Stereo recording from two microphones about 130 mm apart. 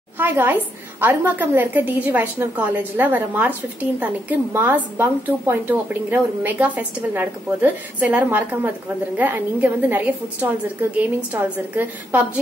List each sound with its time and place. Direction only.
0.2 s a woman's voice: 15° right (ahead or behind)